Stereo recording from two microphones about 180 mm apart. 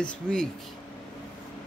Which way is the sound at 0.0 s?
5° left (ahead or behind).